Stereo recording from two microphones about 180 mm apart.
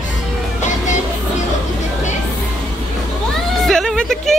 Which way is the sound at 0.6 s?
40° left (ahead or behind).